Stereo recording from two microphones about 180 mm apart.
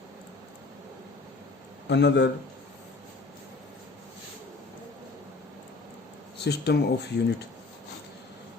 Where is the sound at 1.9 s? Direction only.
75° left (ahead or behind).